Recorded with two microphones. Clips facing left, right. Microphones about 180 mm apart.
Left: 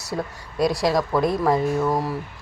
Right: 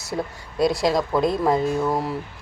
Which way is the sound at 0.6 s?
25° right (ahead or behind).